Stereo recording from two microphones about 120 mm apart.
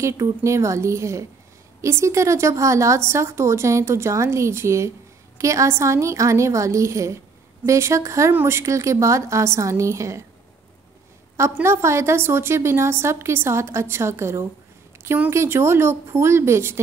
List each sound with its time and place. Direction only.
0.0 s a woman's voice: 25° right (ahead or behind)
11.3 s a woman's voice: 20° right (ahead or behind)